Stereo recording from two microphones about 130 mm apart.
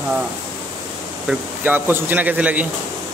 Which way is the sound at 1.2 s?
15° right (ahead or behind).